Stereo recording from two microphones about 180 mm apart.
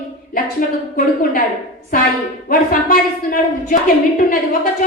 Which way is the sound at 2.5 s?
50° left (ahead or behind).